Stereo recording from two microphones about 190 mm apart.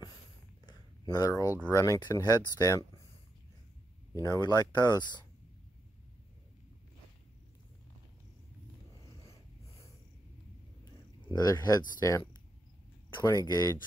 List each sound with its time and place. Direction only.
0.7 s a sound: 20° left (ahead or behind)
1.7 s speech: 15° left (ahead or behind)
4.2 s speech: 20° left (ahead or behind)
11.3 s speech: 20° left (ahead or behind)